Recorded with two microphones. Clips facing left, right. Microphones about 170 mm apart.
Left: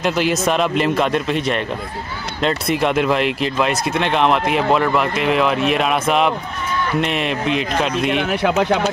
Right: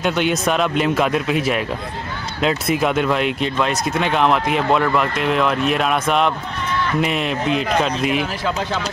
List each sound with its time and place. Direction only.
0.0 s speech: centre (ahead or behind)
8.3 s speech: 65° left (ahead or behind)